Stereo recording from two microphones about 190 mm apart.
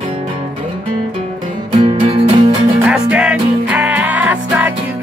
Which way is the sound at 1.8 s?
30° right (ahead or behind).